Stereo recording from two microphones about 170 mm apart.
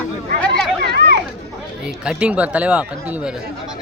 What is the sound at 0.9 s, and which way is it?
Chatter, 75° right (ahead or behind).